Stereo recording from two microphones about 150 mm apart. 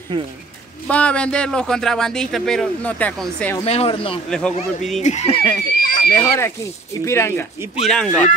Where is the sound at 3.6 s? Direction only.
45° left (ahead or behind).